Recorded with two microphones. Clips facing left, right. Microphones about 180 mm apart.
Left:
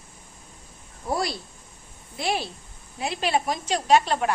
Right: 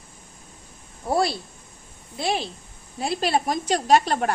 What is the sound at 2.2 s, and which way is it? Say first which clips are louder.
Speech: right 1 dB; 25° right (ahead or behind).